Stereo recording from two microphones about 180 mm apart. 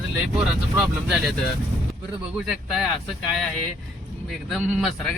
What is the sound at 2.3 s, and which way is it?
Speech, 5° right (ahead or behind).